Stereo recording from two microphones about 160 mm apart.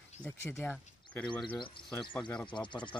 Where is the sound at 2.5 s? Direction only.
30° left (ahead or behind).